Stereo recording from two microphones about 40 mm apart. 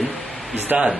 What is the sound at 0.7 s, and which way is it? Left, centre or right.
Speech, right.